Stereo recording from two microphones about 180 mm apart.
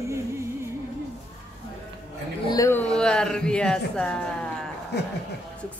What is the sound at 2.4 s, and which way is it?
Speech, 20° left (ahead or behind).